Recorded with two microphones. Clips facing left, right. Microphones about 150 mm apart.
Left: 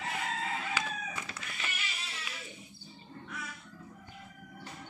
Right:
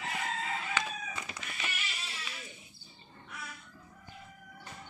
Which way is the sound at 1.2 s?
15° right (ahead or behind).